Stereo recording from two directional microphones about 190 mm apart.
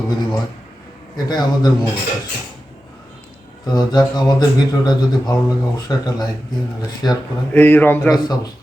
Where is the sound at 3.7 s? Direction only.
20° left (ahead or behind).